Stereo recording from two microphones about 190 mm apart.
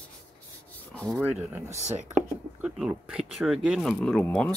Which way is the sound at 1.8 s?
40° right (ahead or behind).